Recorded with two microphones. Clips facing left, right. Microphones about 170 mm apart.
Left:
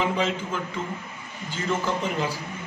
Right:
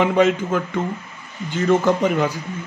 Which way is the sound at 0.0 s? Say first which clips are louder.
Right 9 dB; 60° right (ahead or behind).